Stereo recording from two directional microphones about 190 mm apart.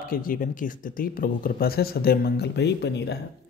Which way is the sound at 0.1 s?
50° left (ahead or behind).